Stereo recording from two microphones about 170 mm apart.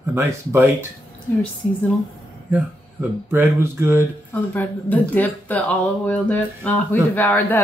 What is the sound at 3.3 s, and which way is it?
Speech, 15° right (ahead or behind).